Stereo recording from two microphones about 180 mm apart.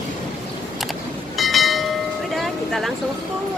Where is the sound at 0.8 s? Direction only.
Centre (ahead or behind).